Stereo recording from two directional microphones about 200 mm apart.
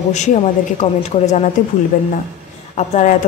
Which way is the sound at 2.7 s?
35° left (ahead or behind).